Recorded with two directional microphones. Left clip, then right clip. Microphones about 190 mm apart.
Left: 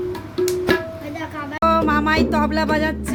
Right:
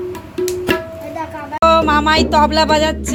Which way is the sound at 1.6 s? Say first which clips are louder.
Right 6 dB; centre (ahead or behind).